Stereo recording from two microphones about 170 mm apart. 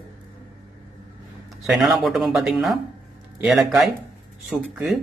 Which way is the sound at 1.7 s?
Centre (ahead or behind).